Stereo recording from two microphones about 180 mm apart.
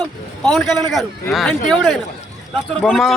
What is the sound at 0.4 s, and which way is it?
Speech, centre (ahead or behind).